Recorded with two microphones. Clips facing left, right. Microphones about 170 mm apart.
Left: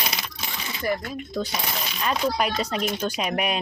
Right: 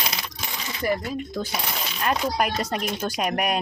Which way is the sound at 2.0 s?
5° right (ahead or behind).